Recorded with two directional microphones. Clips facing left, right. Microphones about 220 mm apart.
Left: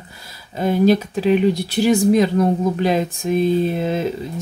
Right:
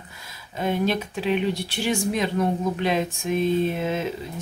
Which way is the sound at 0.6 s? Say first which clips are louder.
Left 8 dB; 40° left (ahead or behind).